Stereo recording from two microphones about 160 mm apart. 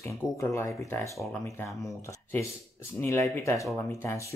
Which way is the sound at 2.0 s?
20° left (ahead or behind).